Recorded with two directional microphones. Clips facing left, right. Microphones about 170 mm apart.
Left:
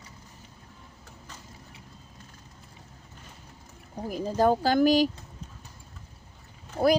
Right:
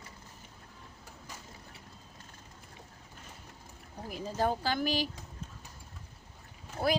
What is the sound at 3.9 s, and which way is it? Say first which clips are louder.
Speech: left 8 dB; 40° left (ahead or behind).